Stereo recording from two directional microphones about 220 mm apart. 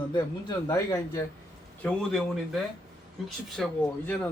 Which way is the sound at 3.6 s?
Centre (ahead or behind).